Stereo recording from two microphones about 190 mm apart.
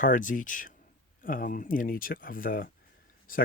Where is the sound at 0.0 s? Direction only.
45° left (ahead or behind).